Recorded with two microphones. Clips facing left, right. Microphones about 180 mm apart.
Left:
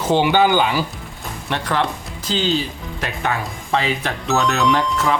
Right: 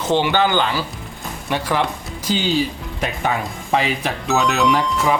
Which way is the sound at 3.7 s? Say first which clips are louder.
Right 1 dB; 10° right (ahead or behind).